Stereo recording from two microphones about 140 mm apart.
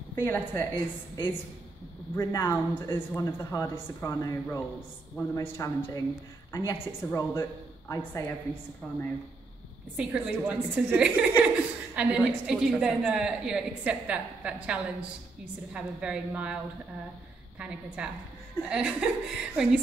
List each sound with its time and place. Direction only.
0.1 s a woman's voice: 15° left (ahead or behind)
1.1 s a woman's voice: 30° left (ahead or behind)
9.9 s a woman's voice: 5° right (ahead or behind)
17.6 s a woman's voice: 5° right (ahead or behind)